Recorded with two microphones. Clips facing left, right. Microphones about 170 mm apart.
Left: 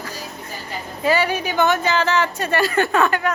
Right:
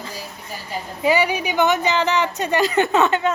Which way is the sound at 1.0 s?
15° right (ahead or behind).